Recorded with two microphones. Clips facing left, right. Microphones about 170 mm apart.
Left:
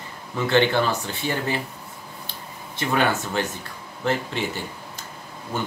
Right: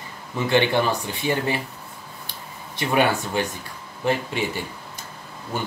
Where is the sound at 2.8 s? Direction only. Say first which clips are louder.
Right 2 dB; 15° right (ahead or behind).